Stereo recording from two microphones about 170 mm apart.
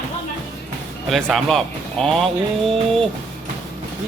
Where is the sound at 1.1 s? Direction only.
Centre (ahead or behind).